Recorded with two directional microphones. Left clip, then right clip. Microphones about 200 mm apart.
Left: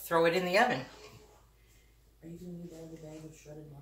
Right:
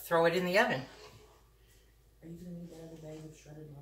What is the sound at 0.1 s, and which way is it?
Speech, 15° left (ahead or behind).